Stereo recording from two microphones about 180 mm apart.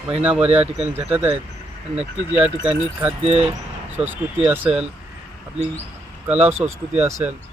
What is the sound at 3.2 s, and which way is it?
Speech, 35° right (ahead or behind).